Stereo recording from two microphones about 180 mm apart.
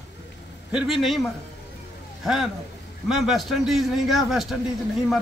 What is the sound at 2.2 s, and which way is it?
A man's voice, centre (ahead or behind).